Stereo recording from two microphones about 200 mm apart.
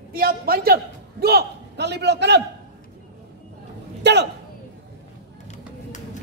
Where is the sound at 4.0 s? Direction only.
60° right (ahead or behind).